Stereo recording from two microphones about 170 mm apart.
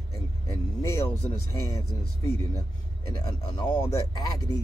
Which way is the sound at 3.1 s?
25° left (ahead or behind).